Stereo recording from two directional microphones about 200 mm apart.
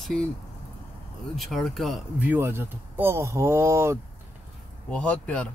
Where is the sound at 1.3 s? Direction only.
Centre (ahead or behind).